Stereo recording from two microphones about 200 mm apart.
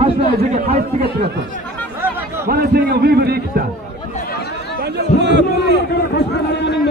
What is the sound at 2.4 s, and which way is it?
A man's voice, 50° right (ahead or behind).